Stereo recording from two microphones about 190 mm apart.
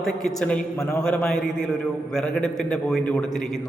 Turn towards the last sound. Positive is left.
turn(degrees=0)  # may be behind; listen again after turning